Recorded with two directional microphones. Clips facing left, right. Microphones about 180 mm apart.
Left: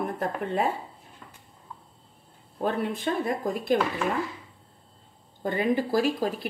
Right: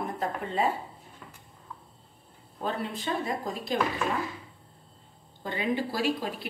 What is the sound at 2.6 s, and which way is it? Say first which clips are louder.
Speech: left 5 dB; 55° left (ahead or behind).